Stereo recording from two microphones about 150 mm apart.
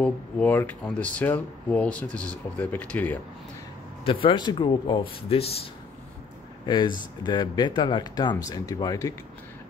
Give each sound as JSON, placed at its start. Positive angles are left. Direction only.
{"t": 0.0, "sound": "speech", "side_deg": 10}
{"t": 4.0, "sound": "speech", "side_deg": 35}
{"t": 6.6, "sound": "speech", "side_deg": 30}